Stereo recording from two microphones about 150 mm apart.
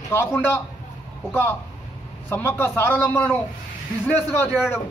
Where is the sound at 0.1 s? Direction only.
15° left (ahead or behind).